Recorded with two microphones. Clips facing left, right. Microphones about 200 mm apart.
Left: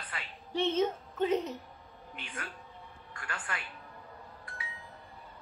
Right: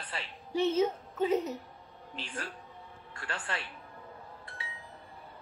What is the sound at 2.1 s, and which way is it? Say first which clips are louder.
A man's voice: right 3 dB; 30° right (ahead or behind).